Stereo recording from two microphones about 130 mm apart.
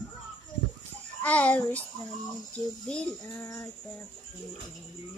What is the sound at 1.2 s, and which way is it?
Speech, 10° left (ahead or behind).